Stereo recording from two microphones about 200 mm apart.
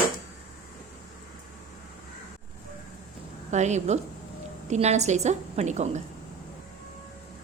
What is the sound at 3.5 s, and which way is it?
A woman's voice, 35° right (ahead or behind).